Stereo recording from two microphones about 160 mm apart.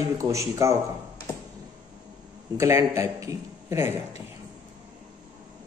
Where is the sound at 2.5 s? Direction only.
20° right (ahead or behind).